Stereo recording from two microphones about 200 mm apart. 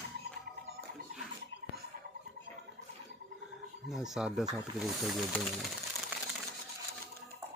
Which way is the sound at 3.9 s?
5° right (ahead or behind).